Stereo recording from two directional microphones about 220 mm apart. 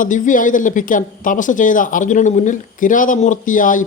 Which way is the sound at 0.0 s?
35° left (ahead or behind).